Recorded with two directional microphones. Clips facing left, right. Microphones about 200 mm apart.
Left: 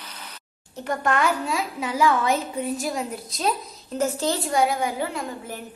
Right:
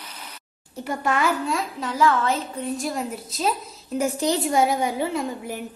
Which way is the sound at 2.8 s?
Centre (ahead or behind).